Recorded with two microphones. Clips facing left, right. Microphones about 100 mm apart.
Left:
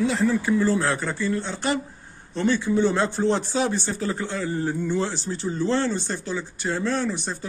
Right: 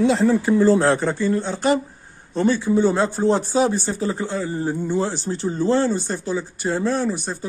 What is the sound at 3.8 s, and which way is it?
Speech, 25° right (ahead or behind).